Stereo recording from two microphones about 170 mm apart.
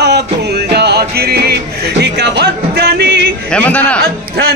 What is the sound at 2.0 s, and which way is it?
Music, 85° right.